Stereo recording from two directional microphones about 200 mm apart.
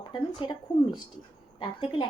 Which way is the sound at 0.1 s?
20° left (ahead or behind).